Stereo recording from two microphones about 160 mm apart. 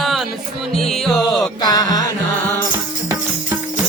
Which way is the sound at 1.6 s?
25° left (ahead or behind).